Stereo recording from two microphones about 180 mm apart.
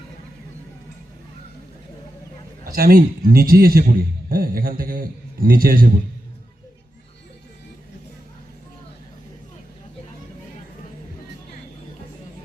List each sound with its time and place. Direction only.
2.7 s a man's voice: 55° right (ahead or behind)